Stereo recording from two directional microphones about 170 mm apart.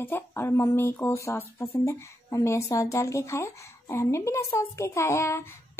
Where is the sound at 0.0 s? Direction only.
15° left (ahead or behind).